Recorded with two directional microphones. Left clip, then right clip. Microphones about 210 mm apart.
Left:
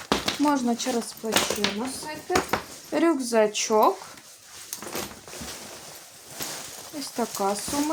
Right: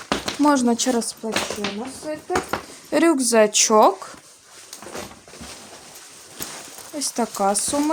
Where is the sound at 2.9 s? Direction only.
55° right (ahead or behind).